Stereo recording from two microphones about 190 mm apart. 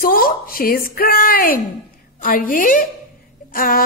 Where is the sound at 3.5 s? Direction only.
50° left (ahead or behind).